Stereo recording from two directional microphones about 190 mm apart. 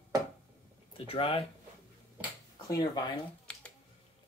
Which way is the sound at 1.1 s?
30° left (ahead or behind).